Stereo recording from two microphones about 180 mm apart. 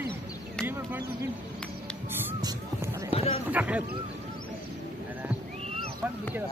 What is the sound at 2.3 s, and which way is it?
Speech, 20° right (ahead or behind).